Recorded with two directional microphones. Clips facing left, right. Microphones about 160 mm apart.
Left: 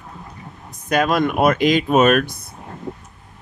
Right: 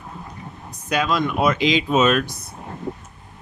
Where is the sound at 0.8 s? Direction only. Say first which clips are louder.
Left 4 dB; 50° left (ahead or behind).